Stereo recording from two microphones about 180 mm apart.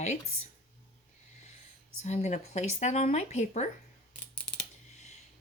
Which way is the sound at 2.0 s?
40° left (ahead or behind).